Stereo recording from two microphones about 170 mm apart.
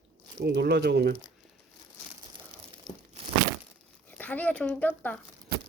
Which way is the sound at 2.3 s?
30° right (ahead or behind).